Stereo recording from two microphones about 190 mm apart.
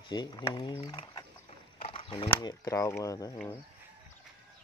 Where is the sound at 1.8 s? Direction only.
30° left (ahead or behind).